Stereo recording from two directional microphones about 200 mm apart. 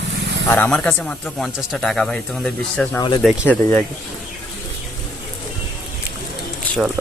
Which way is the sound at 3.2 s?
Centre (ahead or behind).